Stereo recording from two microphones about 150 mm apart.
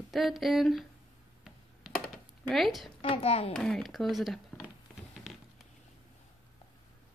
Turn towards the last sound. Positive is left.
turn(degrees=0)  # may be behind; listen again after turning